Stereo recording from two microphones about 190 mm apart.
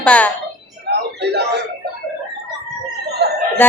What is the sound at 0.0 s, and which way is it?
Speech, 5° left (ahead or behind).